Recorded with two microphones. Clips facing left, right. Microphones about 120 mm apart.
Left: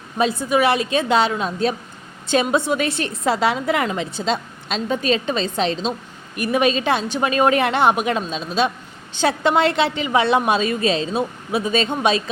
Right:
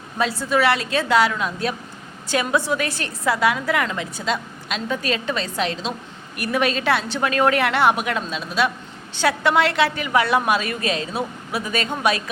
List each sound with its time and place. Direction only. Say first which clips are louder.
0.2 s a woman's voice: left 2 dB; 20° left (ahead or behind)